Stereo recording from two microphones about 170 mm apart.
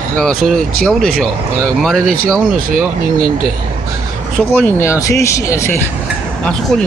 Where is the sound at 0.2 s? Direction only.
5° left (ahead or behind).